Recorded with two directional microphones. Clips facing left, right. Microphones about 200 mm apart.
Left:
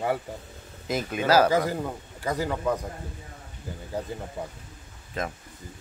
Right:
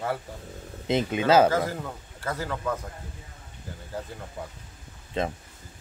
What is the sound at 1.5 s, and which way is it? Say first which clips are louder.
Speech: left 3 dB; 15° left (ahead or behind).